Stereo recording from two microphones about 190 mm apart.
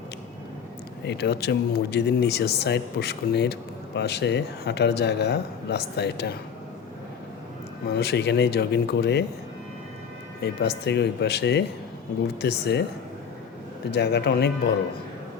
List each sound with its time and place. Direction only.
1.0 s speech: 60° left (ahead or behind)
7.9 s speech: 60° left (ahead or behind)
10.4 s speech: 60° left (ahead or behind)
13.9 s speech: 60° left (ahead or behind)